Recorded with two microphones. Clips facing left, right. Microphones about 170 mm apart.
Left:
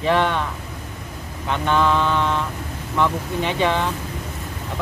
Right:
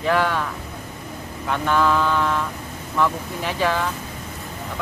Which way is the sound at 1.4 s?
5° right (ahead or behind).